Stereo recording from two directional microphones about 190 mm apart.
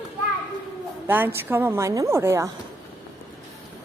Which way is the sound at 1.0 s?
10° right (ahead or behind).